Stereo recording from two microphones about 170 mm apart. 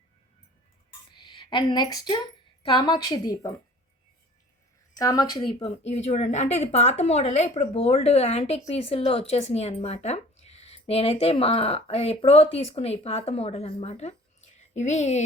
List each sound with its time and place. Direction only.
1.1 s a woman's voice: 30° left (ahead or behind)
4.9 s a woman's voice: 20° left (ahead or behind)
5.9 s speech: 40° left (ahead or behind)